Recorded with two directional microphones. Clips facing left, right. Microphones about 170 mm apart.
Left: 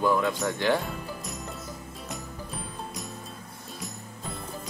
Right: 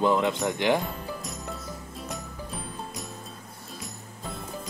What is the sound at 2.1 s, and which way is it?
Music, centre (ahead or behind).